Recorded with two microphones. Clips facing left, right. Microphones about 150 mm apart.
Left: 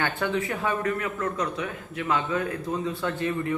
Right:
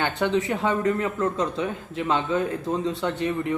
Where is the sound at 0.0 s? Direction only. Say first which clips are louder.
Right 3 dB; 20° right (ahead or behind).